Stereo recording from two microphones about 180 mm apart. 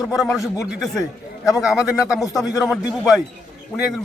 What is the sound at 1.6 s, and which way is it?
Speech, centre (ahead or behind).